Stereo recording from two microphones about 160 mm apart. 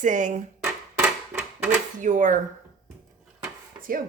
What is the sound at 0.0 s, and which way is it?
Speech, 50° right (ahead or behind).